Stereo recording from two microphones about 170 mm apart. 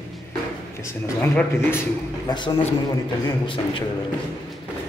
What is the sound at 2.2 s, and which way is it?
Speech, 30° left (ahead or behind).